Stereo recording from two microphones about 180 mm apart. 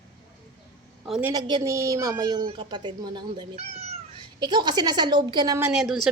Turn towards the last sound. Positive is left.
turn(degrees=0)  # may be behind; listen again after turning